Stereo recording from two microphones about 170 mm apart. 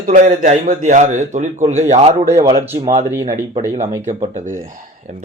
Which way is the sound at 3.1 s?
15° right (ahead or behind).